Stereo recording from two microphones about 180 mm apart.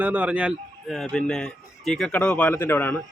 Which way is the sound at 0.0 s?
10° right (ahead or behind).